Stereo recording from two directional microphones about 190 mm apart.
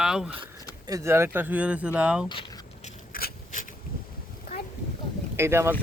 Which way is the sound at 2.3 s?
25° left (ahead or behind).